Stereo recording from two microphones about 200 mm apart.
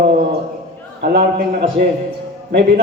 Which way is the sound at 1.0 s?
55° right (ahead or behind).